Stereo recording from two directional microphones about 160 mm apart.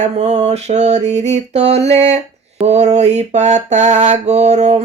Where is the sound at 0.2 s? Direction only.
45° right (ahead or behind).